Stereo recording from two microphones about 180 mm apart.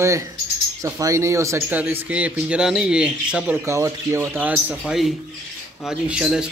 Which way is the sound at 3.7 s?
15° right (ahead or behind).